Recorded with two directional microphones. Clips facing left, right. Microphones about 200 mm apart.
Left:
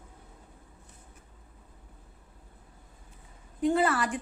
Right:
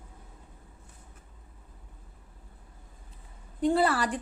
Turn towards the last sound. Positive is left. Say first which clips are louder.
# right 1 dB
turn(degrees=-35)  # may be behind; listen again after turning